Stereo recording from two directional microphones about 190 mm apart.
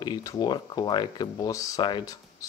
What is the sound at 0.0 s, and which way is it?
Speech, 20° left (ahead or behind).